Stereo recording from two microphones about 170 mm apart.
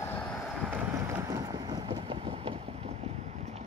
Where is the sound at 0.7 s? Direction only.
15° right (ahead or behind).